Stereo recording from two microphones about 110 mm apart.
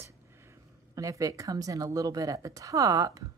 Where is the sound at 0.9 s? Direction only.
30° right (ahead or behind).